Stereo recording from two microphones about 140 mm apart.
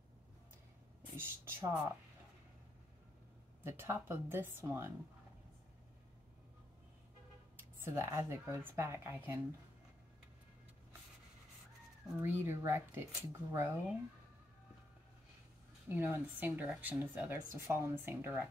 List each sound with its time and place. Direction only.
1.1 s speech: 15° right (ahead or behind)
3.6 s speech: 15° right (ahead or behind)
7.5 s speech: 15° right (ahead or behind)
12.2 s speech: 15° right (ahead or behind)
15.9 s speech: 15° right (ahead or behind)